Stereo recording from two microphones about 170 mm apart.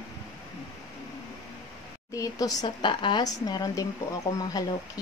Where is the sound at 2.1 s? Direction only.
20° left (ahead or behind).